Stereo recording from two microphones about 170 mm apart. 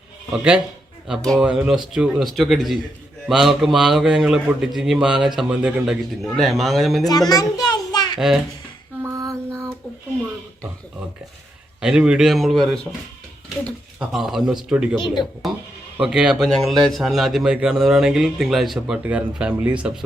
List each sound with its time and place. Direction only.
1.0 s a man's voice: centre (ahead or behind)
7.0 s a child's voice: 25° left (ahead or behind)
7.5 s a sound: 25° left (ahead or behind)
9.0 s a sound: 15° right (ahead or behind)
11.8 s a man's voice: 5° right (ahead or behind)
14.0 s a man's voice: centre (ahead or behind)
14.9 s a child's voice: 25° left (ahead or behind)
16.0 s a man's voice: 5° right (ahead or behind)